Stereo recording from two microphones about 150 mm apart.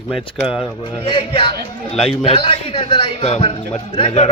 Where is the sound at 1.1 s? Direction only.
35° left (ahead or behind).